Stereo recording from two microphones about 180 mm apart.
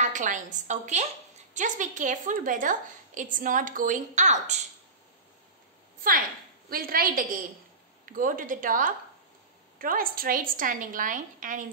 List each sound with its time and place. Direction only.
0.0 s a woman's voice: 45° right (ahead or behind)
6.7 s a woman's voice: 55° right (ahead or behind)